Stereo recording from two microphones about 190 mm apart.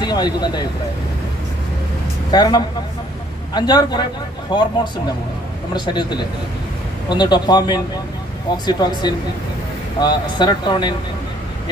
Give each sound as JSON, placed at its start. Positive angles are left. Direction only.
{"t": 0.0, "sound": "speech", "side_deg": 20}
{"t": 2.3, "sound": "speech", "side_deg": 20}